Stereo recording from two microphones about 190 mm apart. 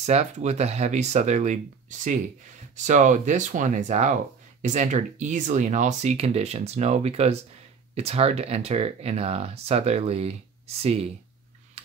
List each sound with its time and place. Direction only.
0.0 s speech: 35° right (ahead or behind)